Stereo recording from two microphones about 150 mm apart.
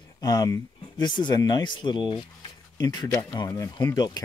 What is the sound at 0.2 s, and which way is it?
Speech, 25° left (ahead or behind).